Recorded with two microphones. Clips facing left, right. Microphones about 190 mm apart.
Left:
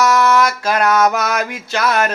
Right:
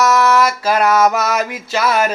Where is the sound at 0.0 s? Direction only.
5° right (ahead or behind).